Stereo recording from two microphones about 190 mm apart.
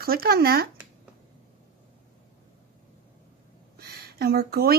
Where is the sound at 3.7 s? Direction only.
55° right (ahead or behind).